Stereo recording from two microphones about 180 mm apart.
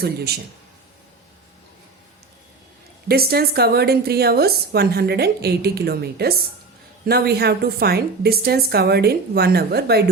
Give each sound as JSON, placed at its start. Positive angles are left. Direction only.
{"t": 3.1, "sound": "a woman's voice", "side_deg": -60}